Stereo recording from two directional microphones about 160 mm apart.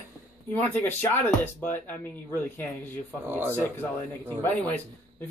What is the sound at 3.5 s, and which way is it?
Speech, 15° left (ahead or behind).